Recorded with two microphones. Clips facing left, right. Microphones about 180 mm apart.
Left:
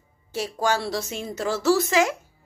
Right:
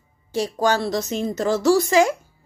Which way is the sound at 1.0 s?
40° right (ahead or behind).